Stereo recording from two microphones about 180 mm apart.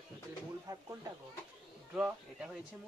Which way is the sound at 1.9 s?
5° right (ahead or behind).